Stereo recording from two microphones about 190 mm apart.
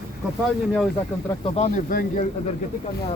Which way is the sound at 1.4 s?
35° left (ahead or behind).